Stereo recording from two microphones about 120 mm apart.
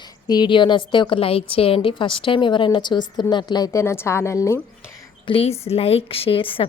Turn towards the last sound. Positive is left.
turn(degrees=50)  # may be behind; listen again after turning